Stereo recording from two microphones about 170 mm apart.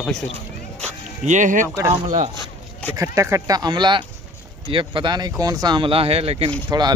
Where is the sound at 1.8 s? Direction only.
15° right (ahead or behind).